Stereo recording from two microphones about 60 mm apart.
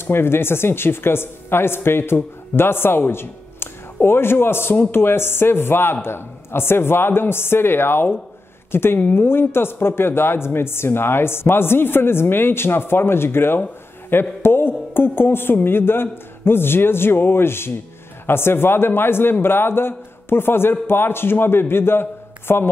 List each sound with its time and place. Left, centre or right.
0.0 s speech: left
14.4 s a sound: left
15.0 s speech: left